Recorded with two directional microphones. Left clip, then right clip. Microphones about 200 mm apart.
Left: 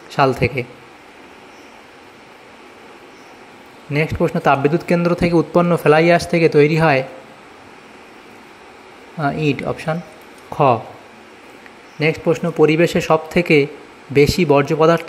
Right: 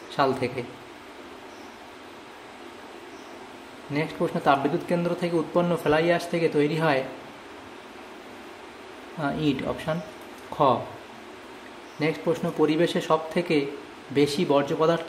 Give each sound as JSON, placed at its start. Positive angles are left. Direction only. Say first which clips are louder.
{"t": 0.1, "sound": "speech", "louder": "left 8 dB", "side_deg": 30}
{"t": 3.9, "sound": "speech", "louder": "left 9 dB", "side_deg": 30}
{"t": 9.6, "sound": "a man's voice", "louder": "left 6 dB", "side_deg": 30}
{"t": 10.5, "sound": "a sound", "louder": "left 7 dB", "side_deg": 30}
{"t": 12.0, "sound": "a man's voice", "louder": "left 8 dB", "side_deg": 25}